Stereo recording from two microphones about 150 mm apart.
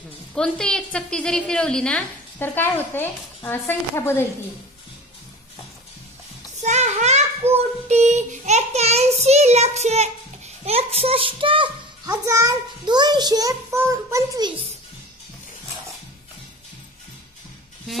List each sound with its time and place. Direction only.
0.3 s a woman's voice: 5° left (ahead or behind)
6.6 s a sound: 50° right (ahead or behind)
7.5 s child singing: 50° right (ahead or behind)
10.6 s a child's voice: 40° right (ahead or behind)
12.3 s a child's voice: 25° right (ahead or behind)